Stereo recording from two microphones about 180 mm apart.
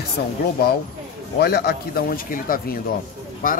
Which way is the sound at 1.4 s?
60° left (ahead or behind).